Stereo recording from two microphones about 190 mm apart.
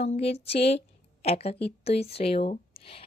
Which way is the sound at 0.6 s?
60° left (ahead or behind).